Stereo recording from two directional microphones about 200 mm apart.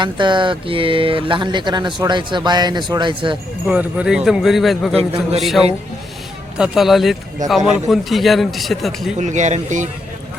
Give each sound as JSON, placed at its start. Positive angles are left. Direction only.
{"t": 0.0, "sound": "speech", "side_deg": -25}
{"t": 3.7, "sound": "a man's voice", "side_deg": -5}
{"t": 4.9, "sound": "speech", "side_deg": -30}
{"t": 6.6, "sound": "a man's voice", "side_deg": 0}
{"t": 9.1, "sound": "speech", "side_deg": -35}